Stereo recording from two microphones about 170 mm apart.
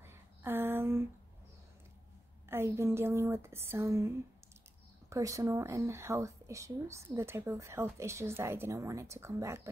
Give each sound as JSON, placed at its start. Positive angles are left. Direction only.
{"t": 0.0, "sound": "a sound", "side_deg": -15}
{"t": 2.5, "sound": "speech", "side_deg": -15}
{"t": 5.1, "sound": "speech", "side_deg": -20}